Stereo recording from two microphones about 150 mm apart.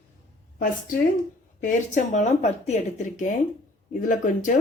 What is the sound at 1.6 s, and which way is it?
A woman's voice, 55° left (ahead or behind).